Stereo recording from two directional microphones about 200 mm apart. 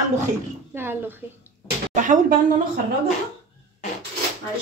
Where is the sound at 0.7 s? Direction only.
10° right (ahead or behind).